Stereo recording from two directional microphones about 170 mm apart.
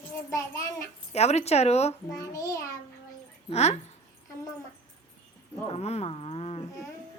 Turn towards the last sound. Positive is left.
turn(degrees=35)  # may be behind; listen again after turning